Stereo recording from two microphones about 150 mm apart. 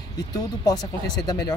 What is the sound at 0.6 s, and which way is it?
Speech, 25° left (ahead or behind).